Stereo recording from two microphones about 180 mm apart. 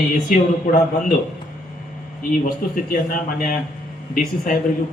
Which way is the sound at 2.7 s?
45° left (ahead or behind).